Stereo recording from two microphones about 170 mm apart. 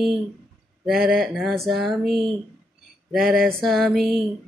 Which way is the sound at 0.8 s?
Centre (ahead or behind).